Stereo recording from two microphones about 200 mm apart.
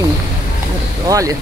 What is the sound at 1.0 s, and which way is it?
Speech, 15° right (ahead or behind).